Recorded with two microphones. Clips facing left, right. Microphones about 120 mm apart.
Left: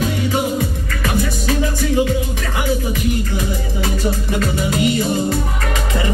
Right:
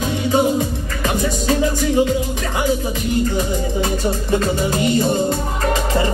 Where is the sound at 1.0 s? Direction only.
25° right (ahead or behind).